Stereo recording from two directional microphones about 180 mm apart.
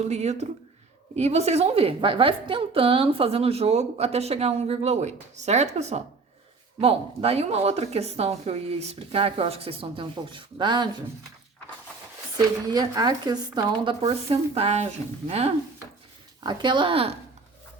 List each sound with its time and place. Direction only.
0.0 s a woman's voice: 40° right (ahead or behind)
12.6 s a woman's voice: 20° right (ahead or behind)